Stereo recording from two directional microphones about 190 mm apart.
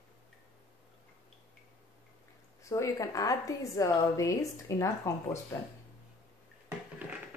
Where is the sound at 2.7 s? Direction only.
15° left (ahead or behind).